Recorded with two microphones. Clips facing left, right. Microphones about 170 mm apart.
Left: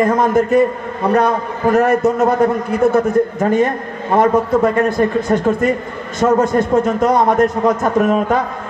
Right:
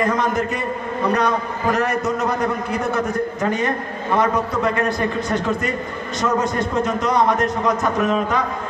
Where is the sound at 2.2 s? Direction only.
50° left (ahead or behind).